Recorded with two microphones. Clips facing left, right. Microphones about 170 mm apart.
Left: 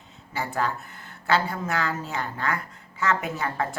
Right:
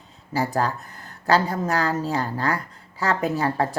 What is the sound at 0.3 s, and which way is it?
Speech, 35° right (ahead or behind).